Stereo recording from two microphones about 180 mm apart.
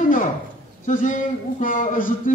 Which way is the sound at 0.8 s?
45° left (ahead or behind).